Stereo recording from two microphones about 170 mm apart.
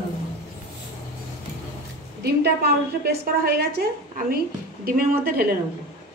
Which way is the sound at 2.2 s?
70° right (ahead or behind).